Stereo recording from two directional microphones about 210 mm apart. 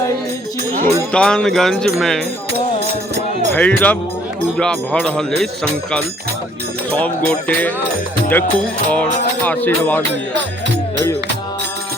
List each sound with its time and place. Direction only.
1.1 s speech: 5° left (ahead or behind)
3.5 s music: 5° left (ahead or behind)
4.5 s speech: 5° left (ahead or behind)
7.3 s music: 5° left (ahead or behind)